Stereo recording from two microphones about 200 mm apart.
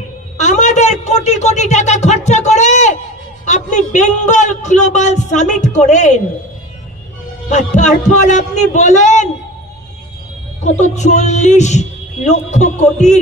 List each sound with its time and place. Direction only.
0.4 s a man's voice: 35° left (ahead or behind)
7.5 s a man's voice: 35° left (ahead or behind)
10.8 s a man's voice: 35° left (ahead or behind)